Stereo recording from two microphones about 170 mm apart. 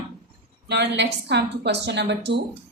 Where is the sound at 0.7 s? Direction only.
90° right.